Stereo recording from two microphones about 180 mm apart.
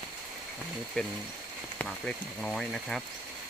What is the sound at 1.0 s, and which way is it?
Speech, 5° left (ahead or behind).